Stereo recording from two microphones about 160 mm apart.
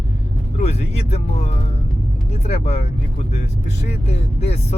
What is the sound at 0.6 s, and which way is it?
Speech, 45° left (ahead or behind).